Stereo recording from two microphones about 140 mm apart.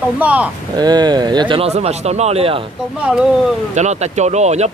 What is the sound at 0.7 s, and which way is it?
Speech, 30° right (ahead or behind).